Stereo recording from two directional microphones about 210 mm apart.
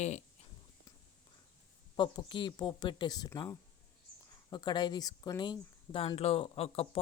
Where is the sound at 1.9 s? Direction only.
20° left (ahead or behind).